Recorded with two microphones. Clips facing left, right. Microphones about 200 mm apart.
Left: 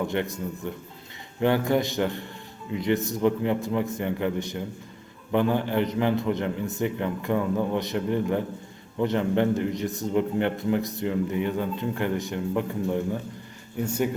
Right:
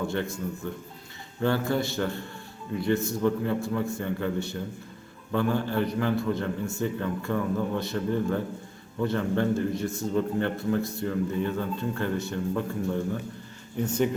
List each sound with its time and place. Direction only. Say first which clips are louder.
0.1 s a man's voice: left 2 dB; 20° left (ahead or behind)